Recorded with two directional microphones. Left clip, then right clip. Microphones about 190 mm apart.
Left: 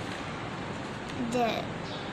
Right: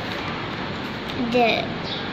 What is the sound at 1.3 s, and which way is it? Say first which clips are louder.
Speech: right 10 dB; 20° left (ahead or behind).